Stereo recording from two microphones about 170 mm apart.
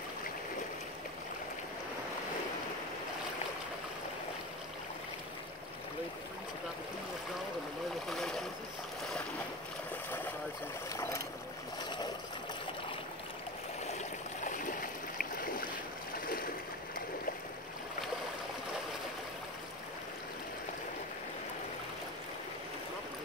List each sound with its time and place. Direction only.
8.1 s boat: centre (ahead or behind)
10.9 s boat: 15° left (ahead or behind)
13.9 s stream: 50° left (ahead or behind)
16.3 s a sound: 60° left (ahead or behind)